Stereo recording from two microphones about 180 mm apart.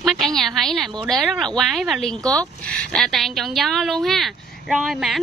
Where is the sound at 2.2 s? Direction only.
20° right (ahead or behind).